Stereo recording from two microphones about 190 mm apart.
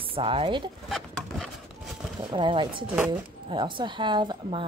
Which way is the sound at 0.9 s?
Centre (ahead or behind).